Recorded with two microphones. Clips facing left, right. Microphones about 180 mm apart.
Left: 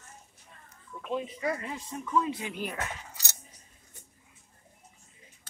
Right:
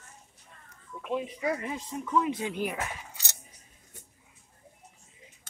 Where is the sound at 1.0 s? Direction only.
5° right (ahead or behind).